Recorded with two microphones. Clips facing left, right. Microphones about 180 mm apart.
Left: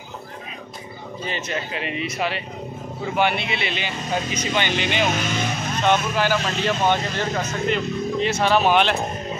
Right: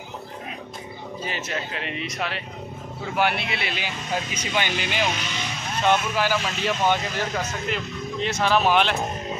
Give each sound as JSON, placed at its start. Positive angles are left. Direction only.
{"t": 1.2, "sound": "speech", "side_deg": 0}
{"t": 5.1, "sound": "speech", "side_deg": 50}
{"t": 5.9, "sound": "speech", "side_deg": -5}